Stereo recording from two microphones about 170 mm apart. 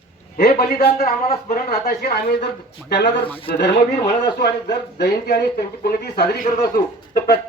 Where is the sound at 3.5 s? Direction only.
70° left (ahead or behind).